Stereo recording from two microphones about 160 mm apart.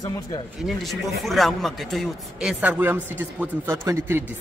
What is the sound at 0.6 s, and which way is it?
A man's voice, centre (ahead or behind).